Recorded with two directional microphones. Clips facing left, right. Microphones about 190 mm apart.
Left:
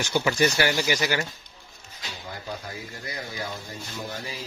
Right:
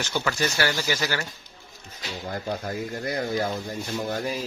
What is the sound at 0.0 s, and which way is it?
Speech, 15° left (ahead or behind).